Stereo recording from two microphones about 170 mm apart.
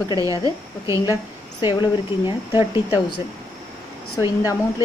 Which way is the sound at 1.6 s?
25° left (ahead or behind).